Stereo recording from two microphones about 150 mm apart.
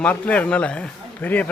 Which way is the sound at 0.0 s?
10° left (ahead or behind).